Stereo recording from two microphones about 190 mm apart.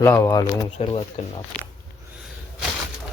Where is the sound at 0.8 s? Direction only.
35° left (ahead or behind).